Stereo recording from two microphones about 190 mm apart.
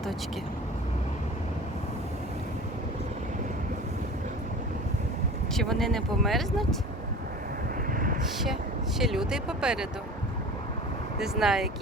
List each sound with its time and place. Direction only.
5.5 s speech: centre (ahead or behind)
7.9 s vehicle: 45° right (ahead or behind)
9.0 s speech: centre (ahead or behind)
11.2 s speech: centre (ahead or behind)